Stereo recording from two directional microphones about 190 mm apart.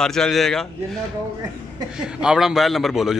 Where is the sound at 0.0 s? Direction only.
5° left (ahead or behind).